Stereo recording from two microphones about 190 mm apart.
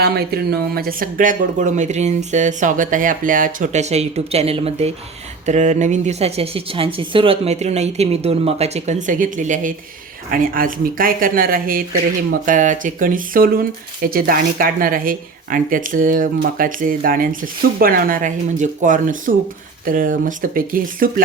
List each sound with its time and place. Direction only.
0.0 s speech: 55° right (ahead or behind)